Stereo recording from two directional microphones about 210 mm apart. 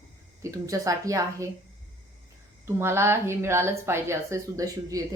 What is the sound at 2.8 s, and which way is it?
A woman's voice, 10° right (ahead or behind).